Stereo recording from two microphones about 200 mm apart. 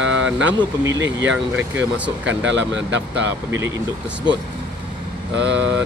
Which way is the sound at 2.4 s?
65° right (ahead or behind).